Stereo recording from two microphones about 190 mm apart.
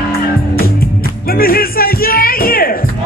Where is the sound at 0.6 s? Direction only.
50° left (ahead or behind).